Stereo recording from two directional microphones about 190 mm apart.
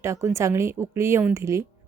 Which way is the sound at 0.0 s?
15° right (ahead or behind).